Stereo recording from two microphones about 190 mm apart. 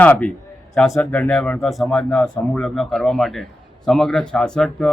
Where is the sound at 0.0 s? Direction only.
10° left (ahead or behind).